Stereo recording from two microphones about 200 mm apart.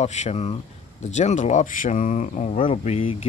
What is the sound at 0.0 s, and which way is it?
Speech, 35° left (ahead or behind).